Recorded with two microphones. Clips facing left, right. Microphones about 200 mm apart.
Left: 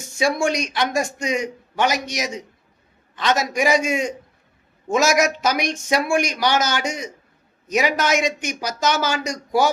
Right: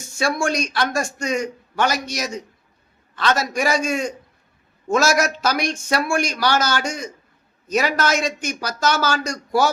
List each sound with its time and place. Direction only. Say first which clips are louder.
0.0 s a man's voice: left 2 dB; 20° left (ahead or behind)